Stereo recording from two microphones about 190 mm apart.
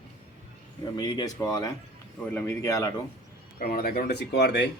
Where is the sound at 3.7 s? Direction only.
55° left (ahead or behind).